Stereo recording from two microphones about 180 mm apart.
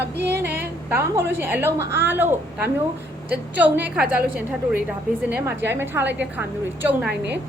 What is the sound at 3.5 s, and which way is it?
Speech, 10° right (ahead or behind).